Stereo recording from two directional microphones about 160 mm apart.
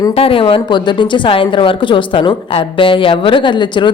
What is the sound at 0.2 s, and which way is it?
A woman's voice, 35° left (ahead or behind).